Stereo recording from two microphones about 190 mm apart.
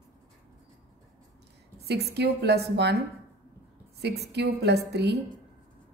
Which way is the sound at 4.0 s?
60° right (ahead or behind).